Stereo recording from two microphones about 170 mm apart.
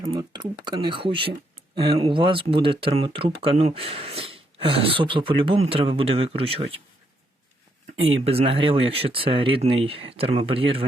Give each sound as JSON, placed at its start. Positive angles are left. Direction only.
{"t": 0.0, "sound": "speech", "side_deg": -25}
{"t": 7.9, "sound": "speech", "side_deg": -35}